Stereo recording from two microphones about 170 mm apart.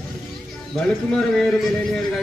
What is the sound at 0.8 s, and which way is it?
A man's voice, 5° left (ahead or behind).